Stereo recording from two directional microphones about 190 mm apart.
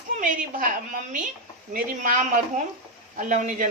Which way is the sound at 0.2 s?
45° right (ahead or behind).